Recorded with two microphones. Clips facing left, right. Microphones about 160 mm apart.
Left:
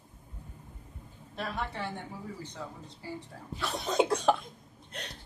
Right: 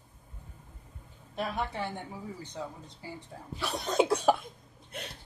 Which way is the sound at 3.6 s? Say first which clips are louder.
Right 1 dB; centre (ahead or behind).